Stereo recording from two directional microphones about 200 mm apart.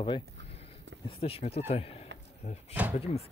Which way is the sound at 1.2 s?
30° left (ahead or behind).